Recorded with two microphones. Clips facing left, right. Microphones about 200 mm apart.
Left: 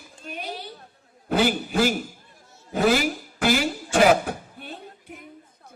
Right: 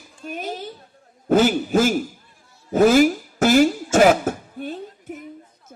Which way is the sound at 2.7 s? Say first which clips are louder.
Right 7 dB; 45° right (ahead or behind).